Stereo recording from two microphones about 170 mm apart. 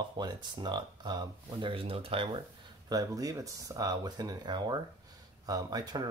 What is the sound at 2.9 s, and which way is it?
Speech, 20° right (ahead or behind).